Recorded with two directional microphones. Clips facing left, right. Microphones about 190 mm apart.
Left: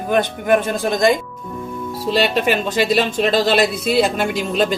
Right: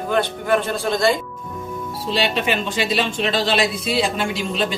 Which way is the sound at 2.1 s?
45° left (ahead or behind).